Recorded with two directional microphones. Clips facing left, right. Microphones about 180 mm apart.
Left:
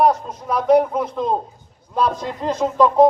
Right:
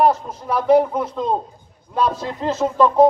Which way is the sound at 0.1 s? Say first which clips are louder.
Even; 10° right (ahead or behind).